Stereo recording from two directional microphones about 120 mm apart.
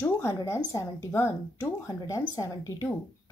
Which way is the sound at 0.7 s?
20° left (ahead or behind).